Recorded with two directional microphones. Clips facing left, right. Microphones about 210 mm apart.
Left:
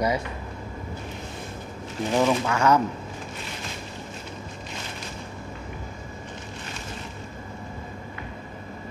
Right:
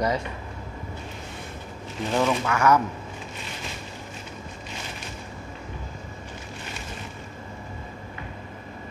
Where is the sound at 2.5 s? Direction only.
25° left (ahead or behind).